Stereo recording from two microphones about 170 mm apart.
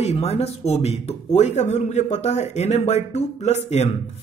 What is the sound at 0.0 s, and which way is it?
Speech, 40° left (ahead or behind).